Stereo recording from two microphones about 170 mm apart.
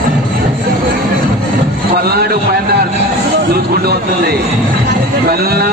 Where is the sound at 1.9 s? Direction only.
65° right (ahead or behind).